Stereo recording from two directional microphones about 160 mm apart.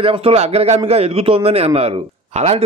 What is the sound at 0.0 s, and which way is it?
A man's voice, 40° right (ahead or behind).